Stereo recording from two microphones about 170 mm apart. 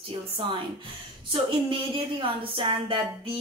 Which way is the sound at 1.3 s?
30° right (ahead or behind).